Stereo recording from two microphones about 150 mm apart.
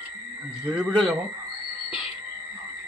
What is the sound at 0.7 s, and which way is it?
Speech, centre (ahead or behind).